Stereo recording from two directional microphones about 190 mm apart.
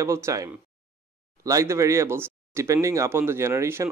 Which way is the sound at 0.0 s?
15° right (ahead or behind).